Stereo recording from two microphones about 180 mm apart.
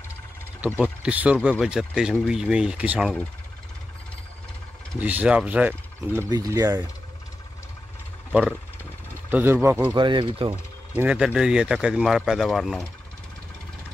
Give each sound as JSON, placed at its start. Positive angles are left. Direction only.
{"t": 0.7, "sound": "speech", "side_deg": -5}
{"t": 5.0, "sound": "speech", "side_deg": -10}
{"t": 6.2, "sound": "speech", "side_deg": -20}
{"t": 8.3, "sound": "speech", "side_deg": -5}
{"t": 9.9, "sound": "speech", "side_deg": -25}
{"t": 11.0, "sound": "speech", "side_deg": -5}